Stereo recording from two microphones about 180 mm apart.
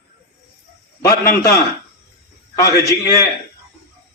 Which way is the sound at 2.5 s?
20° left (ahead or behind).